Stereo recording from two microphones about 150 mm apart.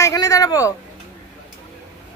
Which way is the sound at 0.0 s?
20° left (ahead or behind).